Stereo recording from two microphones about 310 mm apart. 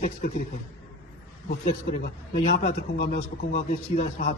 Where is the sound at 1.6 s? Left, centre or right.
Left.